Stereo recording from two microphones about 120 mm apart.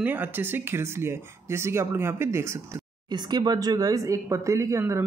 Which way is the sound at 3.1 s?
35° right (ahead or behind).